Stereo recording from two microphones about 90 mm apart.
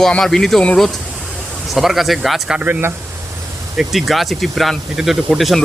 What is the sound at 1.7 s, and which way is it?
Speech, centre (ahead or behind).